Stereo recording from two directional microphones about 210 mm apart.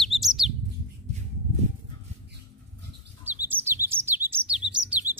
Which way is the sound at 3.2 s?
10° right (ahead or behind).